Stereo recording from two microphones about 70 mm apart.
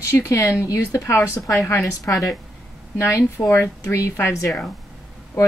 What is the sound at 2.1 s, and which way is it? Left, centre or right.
Speech, left.